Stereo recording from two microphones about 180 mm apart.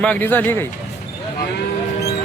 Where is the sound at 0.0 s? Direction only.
10° left (ahead or behind).